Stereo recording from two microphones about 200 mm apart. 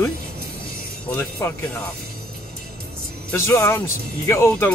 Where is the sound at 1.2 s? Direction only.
10° left (ahead or behind).